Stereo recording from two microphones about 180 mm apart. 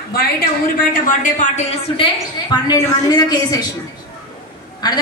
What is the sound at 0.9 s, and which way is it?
Speech, 45° left (ahead or behind).